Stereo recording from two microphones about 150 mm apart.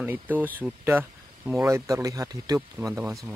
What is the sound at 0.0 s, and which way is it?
Speech, 10° right (ahead or behind).